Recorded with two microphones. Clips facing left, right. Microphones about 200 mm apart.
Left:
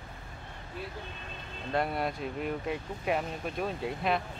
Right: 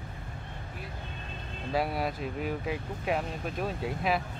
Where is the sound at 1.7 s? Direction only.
5° right (ahead or behind).